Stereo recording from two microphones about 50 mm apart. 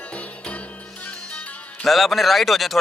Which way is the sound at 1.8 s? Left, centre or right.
Centre.